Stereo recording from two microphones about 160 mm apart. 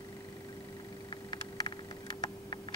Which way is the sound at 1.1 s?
25° left (ahead or behind).